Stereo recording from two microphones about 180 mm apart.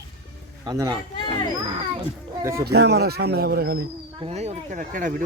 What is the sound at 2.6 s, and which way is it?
Speech, 65° right (ahead or behind).